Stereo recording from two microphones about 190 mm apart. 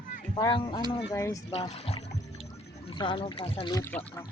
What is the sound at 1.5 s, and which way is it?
Speech, 30° left (ahead or behind).